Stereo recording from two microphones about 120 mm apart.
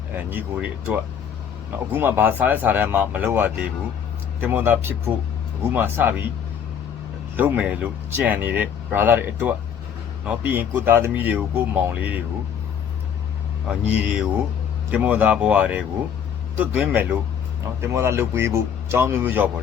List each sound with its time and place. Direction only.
0.3 s speech: 15° right (ahead or behind)
1.9 s speech: 15° right (ahead or behind)
7.3 s speech: 10° right (ahead or behind)
13.7 s speech: 10° right (ahead or behind)